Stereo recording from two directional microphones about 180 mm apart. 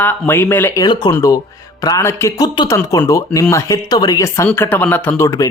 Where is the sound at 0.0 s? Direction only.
10° left (ahead or behind).